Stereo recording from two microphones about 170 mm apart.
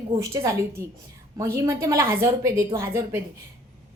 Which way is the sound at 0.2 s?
20° right (ahead or behind).